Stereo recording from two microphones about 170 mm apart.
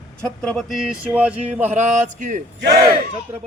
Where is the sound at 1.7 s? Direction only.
45° right (ahead or behind).